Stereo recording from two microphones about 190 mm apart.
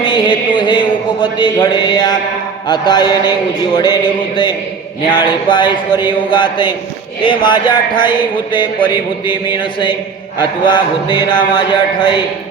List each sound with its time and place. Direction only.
0.0 s speech: 25° left (ahead or behind)